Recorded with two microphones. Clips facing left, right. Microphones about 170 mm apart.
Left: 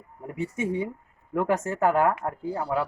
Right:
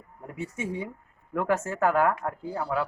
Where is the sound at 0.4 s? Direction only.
60° left (ahead or behind).